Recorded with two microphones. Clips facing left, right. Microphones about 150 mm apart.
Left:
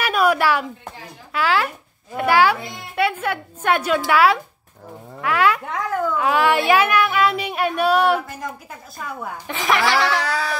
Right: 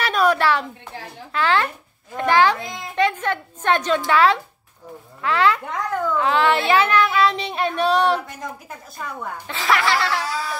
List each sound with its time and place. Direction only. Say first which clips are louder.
0.0 s a sound: even; 10° left (ahead or behind)
1.3 s a child's voice: even; 10° left (ahead or behind)
9.2 s a child's voice: left 3 dB; 15° left (ahead or behind)
10.2 s music: left 3 dB; 70° left (ahead or behind)